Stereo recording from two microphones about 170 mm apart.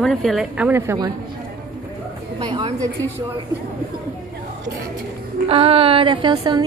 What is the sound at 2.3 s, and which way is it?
Speech, 25° right (ahead or behind).